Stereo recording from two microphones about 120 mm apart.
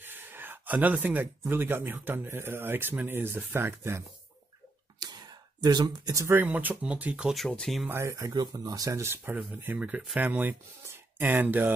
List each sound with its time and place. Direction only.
0.0 s speech: 15° right (ahead or behind)
5.0 s a sound: 35° right (ahead or behind)
6.2 s speech: 15° right (ahead or behind); by 7.8 s 5° left (ahead or behind)
7.8 s speech: 20° right (ahead or behind)